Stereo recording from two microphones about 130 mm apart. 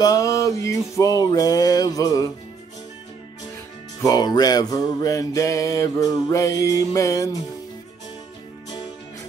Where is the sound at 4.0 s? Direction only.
30° left (ahead or behind).